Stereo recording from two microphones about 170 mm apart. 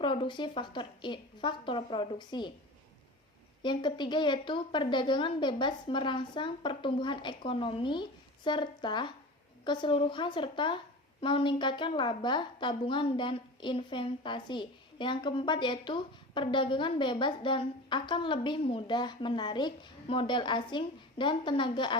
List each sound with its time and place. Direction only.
0.0 s a woman's voice: 30° left (ahead or behind)
3.6 s a woman's voice: 25° left (ahead or behind)